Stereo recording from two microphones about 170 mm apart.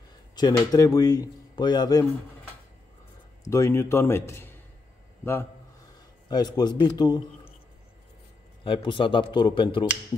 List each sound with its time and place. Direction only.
0.4 s speech: 20° left (ahead or behind)
3.4 s a man's voice: 15° left (ahead or behind)
6.2 s speech: 25° left (ahead or behind)
8.6 s speech: 30° left (ahead or behind)